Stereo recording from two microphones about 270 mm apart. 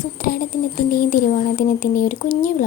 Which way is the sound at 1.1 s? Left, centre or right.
Left.